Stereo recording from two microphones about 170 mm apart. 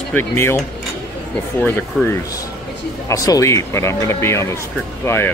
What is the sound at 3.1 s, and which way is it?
Speech, 20° left (ahead or behind).